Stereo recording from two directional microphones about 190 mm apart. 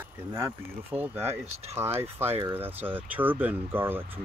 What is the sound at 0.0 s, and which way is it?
Speech, 15° right (ahead or behind).